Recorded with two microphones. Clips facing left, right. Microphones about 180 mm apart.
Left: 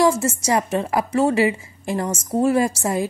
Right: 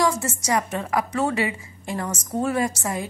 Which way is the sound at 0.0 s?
25° left (ahead or behind).